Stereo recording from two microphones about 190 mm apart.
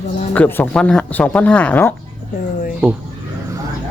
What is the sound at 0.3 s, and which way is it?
Speech, 10° left (ahead or behind).